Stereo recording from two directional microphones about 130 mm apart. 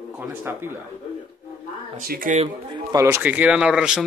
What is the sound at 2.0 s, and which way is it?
Speech, 85° right.